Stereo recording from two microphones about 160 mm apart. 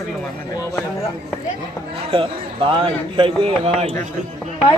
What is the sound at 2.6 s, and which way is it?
Speech, 30° right (ahead or behind).